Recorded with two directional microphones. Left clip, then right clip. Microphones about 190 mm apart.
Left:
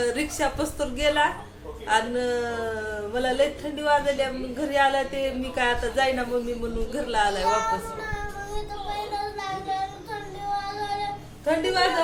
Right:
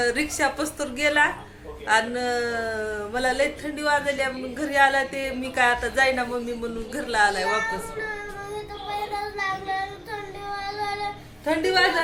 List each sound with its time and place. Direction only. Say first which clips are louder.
0.0 s speech: right 2 dB; 15° right (ahead or behind)
11.4 s a woman's voice: right 1 dB; 50° right (ahead or behind)